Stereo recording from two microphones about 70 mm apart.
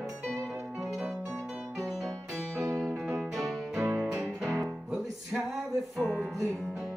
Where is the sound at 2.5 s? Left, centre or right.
Right.